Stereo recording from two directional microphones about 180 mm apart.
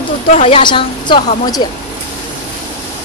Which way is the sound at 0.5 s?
30° left (ahead or behind).